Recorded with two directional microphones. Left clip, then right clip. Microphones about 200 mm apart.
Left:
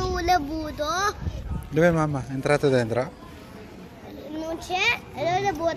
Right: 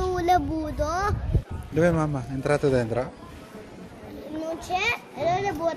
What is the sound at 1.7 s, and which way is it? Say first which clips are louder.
A child's voice: left 2 dB; 10° left (ahead or behind).